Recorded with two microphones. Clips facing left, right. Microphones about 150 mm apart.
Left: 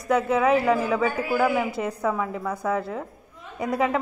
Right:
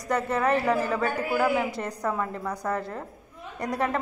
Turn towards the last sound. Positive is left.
turn(degrees=5)  # may be behind; listen again after turning